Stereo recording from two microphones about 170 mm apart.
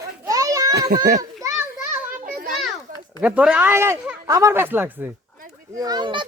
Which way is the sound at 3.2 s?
5° right (ahead or behind).